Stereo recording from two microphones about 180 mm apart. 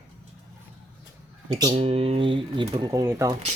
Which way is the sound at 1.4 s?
20° right (ahead or behind).